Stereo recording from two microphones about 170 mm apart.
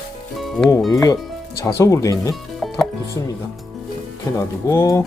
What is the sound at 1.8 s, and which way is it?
Speech, 20° left (ahead or behind).